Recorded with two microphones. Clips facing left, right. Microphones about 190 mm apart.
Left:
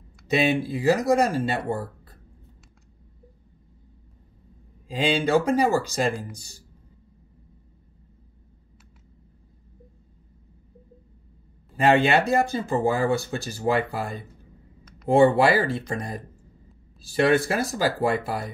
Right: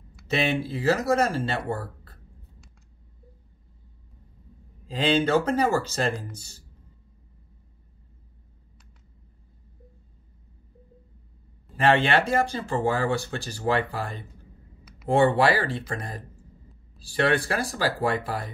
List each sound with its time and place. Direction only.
0.3 s speech: 15° left (ahead or behind)
4.8 s speech: 10° left (ahead or behind)
11.7 s speech: 20° left (ahead or behind)
17.1 s speech: 20° left (ahead or behind)